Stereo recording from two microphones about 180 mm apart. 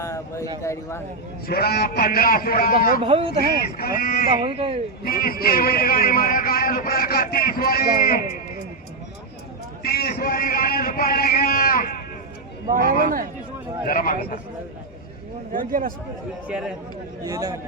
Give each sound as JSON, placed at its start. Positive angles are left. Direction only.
{"t": 0.0, "sound": "a man's voice", "side_deg": 15}
{"t": 1.5, "sound": "a man's voice", "side_deg": 60}
{"t": 3.0, "sound": "speech", "side_deg": -30}
{"t": 3.6, "sound": "a man's voice", "side_deg": 55}
{"t": 4.4, "sound": "speech", "side_deg": -30}
{"t": 5.0, "sound": "a man's voice", "side_deg": 55}
{"t": 9.8, "sound": "a man's voice", "side_deg": 60}
{"t": 12.7, "sound": "speech", "side_deg": -50}
{"t": 13.8, "sound": "a man's voice", "side_deg": 50}
{"t": 15.5, "sound": "speech", "side_deg": -50}
{"t": 16.5, "sound": "speech", "side_deg": -5}
{"t": 17.2, "sound": "a man's voice", "side_deg": -20}